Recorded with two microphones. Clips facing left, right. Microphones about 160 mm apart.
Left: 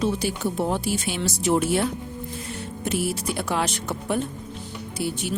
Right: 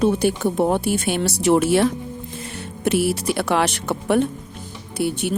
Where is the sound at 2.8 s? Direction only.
75° right (ahead or behind).